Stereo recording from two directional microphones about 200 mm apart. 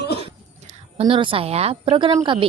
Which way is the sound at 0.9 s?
25° right (ahead or behind).